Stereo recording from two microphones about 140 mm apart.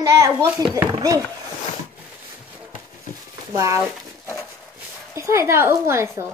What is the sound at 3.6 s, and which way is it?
Speech, 20° right (ahead or behind).